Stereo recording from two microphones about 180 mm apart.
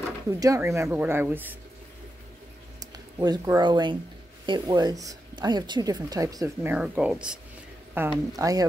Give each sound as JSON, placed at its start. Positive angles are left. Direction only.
{"t": 0.3, "sound": "speech", "side_deg": -20}
{"t": 2.8, "sound": "speech", "side_deg": -20}